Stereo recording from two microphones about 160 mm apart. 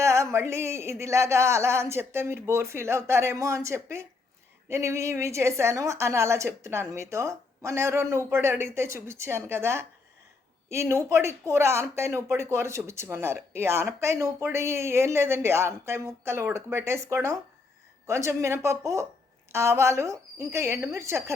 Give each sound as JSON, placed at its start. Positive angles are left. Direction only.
{"t": 0.0, "sound": "speech", "side_deg": -20}